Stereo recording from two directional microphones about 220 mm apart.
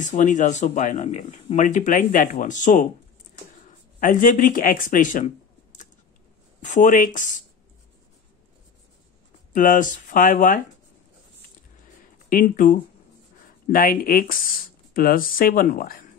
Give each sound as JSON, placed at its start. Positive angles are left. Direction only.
{"t": 0.0, "sound": "speech", "side_deg": 35}
{"t": 4.0, "sound": "speech", "side_deg": 35}
{"t": 9.5, "sound": "speech", "side_deg": 35}
{"t": 12.3, "sound": "speech", "side_deg": 40}